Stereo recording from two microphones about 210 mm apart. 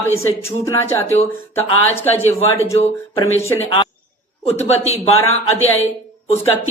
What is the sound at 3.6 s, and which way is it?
A woman's voice, 25° left (ahead or behind).